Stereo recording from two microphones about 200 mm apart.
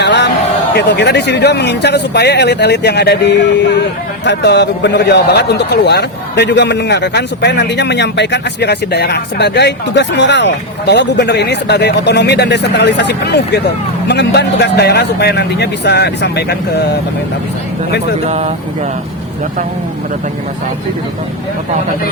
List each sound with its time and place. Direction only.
0.0 s a sound: 60° left (ahead or behind)
0.7 s speech: 55° left (ahead or behind)
18.3 s speech: 35° right (ahead or behind)